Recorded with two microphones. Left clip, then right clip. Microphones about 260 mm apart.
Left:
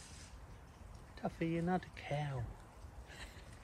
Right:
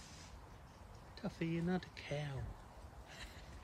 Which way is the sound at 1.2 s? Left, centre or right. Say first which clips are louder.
Left 4 dB; centre.